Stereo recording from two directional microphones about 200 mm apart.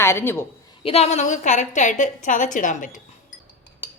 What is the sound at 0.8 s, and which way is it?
A woman's voice, 30° left (ahead or behind).